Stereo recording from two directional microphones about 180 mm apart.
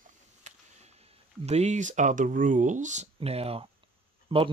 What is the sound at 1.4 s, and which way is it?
Speech, 40° right (ahead or behind).